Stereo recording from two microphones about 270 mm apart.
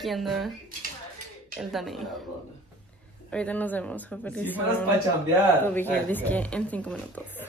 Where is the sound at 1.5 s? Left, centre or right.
Centre.